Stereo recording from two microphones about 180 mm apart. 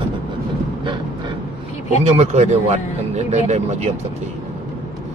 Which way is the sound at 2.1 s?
35° right (ahead or behind).